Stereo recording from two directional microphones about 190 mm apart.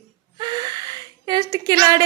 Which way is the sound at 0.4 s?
20° right (ahead or behind).